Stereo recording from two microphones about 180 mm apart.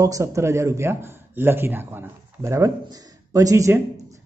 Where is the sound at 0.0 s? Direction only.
15° right (ahead or behind).